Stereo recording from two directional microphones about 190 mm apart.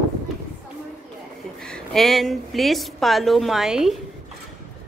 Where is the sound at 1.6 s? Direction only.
5° left (ahead or behind).